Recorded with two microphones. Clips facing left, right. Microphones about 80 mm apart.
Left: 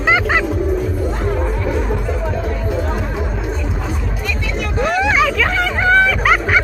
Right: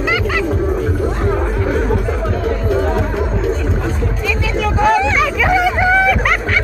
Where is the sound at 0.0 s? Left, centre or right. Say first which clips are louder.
Left 2 dB; left.